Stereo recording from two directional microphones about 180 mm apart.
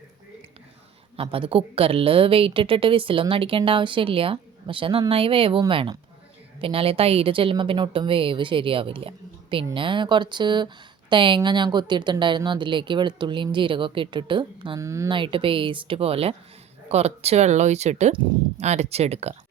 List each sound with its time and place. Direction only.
1.1 s a woman's voice: 30° right (ahead or behind)